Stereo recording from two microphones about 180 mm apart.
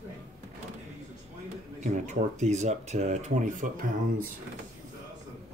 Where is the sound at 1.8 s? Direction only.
40° right (ahead or behind).